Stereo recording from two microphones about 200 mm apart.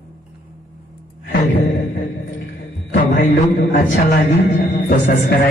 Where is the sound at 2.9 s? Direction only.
40° left (ahead or behind).